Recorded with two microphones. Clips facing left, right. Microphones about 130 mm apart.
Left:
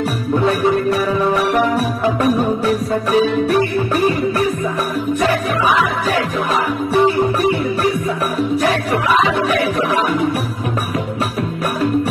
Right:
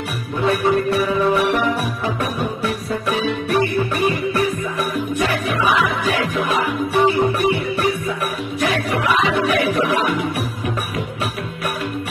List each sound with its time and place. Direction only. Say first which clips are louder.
0.5 s music: right 1 dB; 40° left (ahead or behind)
8.6 s music: left 3 dB; 35° left (ahead or behind)